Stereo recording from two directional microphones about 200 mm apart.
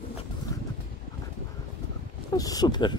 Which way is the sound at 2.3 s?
20° left (ahead or behind).